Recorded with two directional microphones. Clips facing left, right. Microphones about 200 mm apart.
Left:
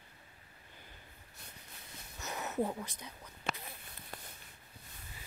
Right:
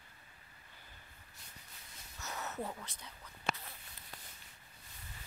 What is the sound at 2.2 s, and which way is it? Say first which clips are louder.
Speech: left 6 dB; 15° left (ahead or behind).